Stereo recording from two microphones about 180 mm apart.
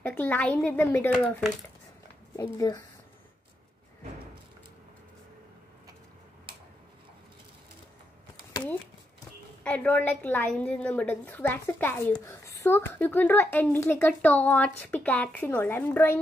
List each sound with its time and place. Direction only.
0.0 s a woman's voice: 10° left (ahead or behind)
9.6 s a woman's voice: 5° left (ahead or behind)